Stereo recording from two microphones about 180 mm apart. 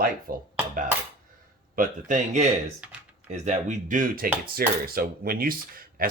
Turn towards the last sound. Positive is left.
turn(degrees=-55)  # may be behind; listen again after turning